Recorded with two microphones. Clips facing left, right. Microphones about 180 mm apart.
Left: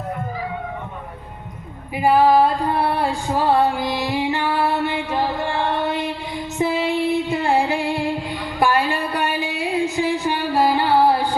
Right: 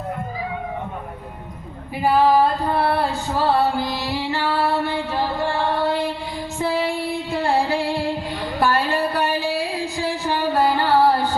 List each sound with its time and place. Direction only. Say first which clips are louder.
2.0 s singing: left 2 dB; 15° left (ahead or behind)
6.6 s music: left 3 dB; 20° left (ahead or behind)